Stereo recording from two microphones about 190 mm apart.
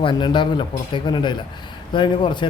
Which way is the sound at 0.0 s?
25° left (ahead or behind).